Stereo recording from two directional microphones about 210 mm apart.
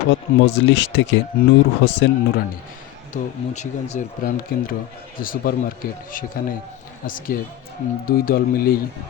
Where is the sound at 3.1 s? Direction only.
35° left (ahead or behind).